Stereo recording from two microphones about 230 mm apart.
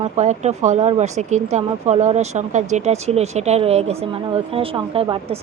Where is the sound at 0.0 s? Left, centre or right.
Right.